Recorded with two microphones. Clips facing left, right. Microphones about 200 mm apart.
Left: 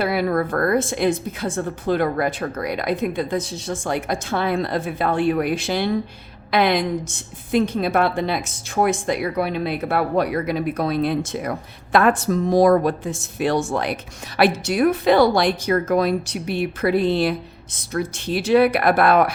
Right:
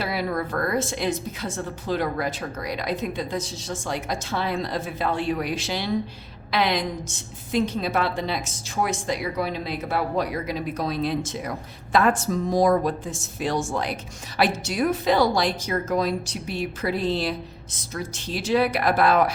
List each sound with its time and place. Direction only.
0.0 s a woman's voice: 55° left (ahead or behind)